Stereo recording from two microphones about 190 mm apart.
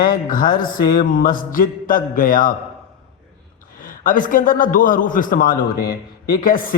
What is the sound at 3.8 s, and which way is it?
A man's voice, 45° left (ahead or behind).